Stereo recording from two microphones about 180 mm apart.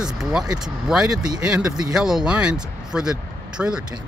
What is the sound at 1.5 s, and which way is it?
Speech, 5° right (ahead or behind).